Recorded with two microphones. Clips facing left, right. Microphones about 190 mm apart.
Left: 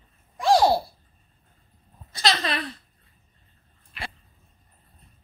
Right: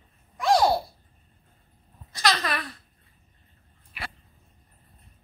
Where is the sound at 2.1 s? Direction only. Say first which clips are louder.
Left 1 dB; 25° left (ahead or behind).